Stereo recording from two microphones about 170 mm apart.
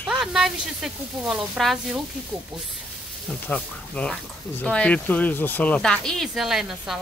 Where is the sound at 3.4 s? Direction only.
5° left (ahead or behind).